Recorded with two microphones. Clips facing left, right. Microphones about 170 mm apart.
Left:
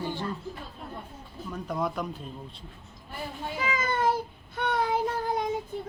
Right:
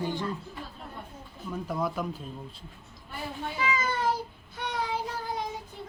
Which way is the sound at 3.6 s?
50° left (ahead or behind).